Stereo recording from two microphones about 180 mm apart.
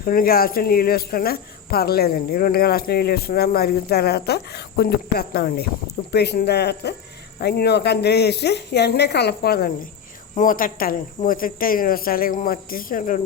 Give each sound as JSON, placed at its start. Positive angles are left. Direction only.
{"t": 0.0, "sound": "speech", "side_deg": 55}